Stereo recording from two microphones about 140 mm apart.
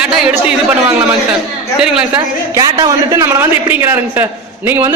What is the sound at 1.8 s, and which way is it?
Speech, 5° right (ahead or behind).